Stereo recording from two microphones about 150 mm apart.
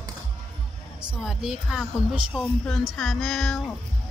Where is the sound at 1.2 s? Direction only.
5° right (ahead or behind).